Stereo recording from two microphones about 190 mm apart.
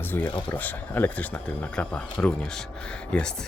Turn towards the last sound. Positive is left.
turn(degrees=5)  # may be behind; listen again after turning